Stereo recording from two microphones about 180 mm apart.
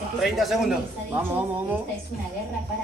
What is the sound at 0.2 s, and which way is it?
Speech, centre (ahead or behind).